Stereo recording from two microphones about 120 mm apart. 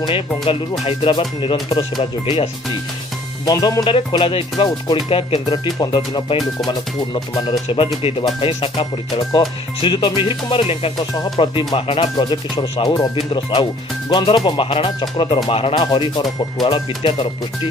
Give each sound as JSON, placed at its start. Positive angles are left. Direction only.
{"t": 0.0, "sound": "speech", "side_deg": 45}
{"t": 3.4, "sound": "speech", "side_deg": 30}
{"t": 8.0, "sound": "speech", "side_deg": 55}
{"t": 12.2, "sound": "speech", "side_deg": 35}
{"t": 13.1, "sound": "speech", "side_deg": 45}